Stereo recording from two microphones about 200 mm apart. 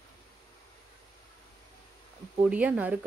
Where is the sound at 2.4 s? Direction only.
5° right (ahead or behind).